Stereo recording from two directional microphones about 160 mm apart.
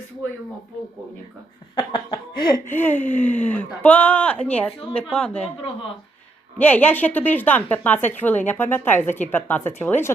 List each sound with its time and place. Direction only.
1.7 s laughter: 30° left (ahead or behind)
2.6 s a woman's voice: 10° left (ahead or behind)
6.6 s a woman's voice: 10° left (ahead or behind)